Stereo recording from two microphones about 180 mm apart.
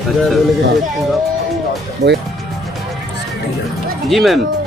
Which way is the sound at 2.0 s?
65° right (ahead or behind).